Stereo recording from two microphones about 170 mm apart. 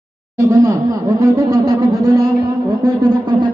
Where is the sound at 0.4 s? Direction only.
20° right (ahead or behind).